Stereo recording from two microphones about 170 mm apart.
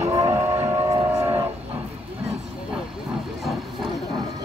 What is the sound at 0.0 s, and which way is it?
Train, 15° right (ahead or behind).